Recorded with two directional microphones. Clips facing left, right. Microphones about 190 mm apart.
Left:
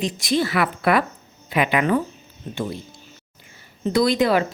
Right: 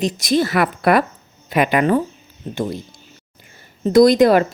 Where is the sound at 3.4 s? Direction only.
45° right (ahead or behind).